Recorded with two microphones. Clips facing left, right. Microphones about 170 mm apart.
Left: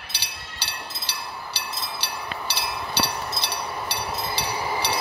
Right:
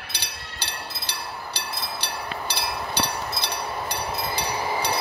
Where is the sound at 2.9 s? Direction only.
50° right (ahead or behind).